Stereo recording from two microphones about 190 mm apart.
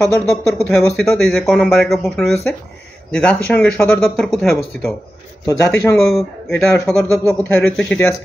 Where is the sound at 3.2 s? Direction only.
5° left (ahead or behind).